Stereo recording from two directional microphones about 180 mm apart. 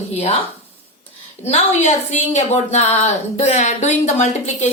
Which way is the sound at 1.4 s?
40° left (ahead or behind).